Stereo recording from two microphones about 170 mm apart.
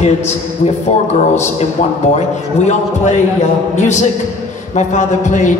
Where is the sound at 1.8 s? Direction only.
50° left (ahead or behind).